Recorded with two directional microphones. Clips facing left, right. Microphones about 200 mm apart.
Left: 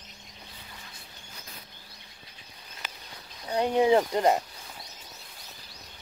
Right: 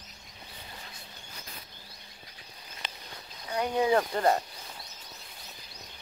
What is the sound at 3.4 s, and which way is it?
Speech, 25° left (ahead or behind).